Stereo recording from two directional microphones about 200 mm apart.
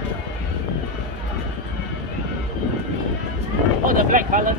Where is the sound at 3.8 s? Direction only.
45° right (ahead or behind).